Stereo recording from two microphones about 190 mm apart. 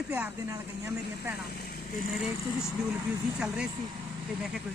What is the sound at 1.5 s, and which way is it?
Speech, 55° left (ahead or behind).